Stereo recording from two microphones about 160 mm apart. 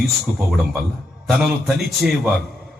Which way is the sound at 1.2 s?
Centre (ahead or behind).